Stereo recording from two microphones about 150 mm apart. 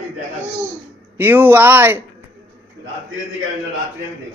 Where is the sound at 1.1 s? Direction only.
15° right (ahead or behind).